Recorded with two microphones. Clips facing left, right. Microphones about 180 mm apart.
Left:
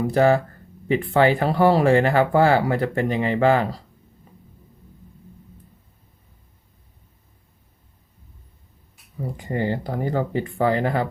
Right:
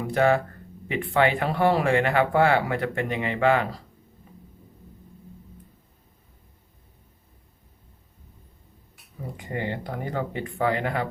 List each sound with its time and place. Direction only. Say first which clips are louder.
0.1 s speech: left 2 dB; 35° left (ahead or behind)
9.4 s speech: left 6 dB; 35° left (ahead or behind)